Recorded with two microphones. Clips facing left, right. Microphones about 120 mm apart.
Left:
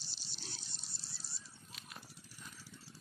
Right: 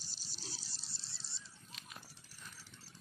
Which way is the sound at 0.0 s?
40° right (ahead or behind).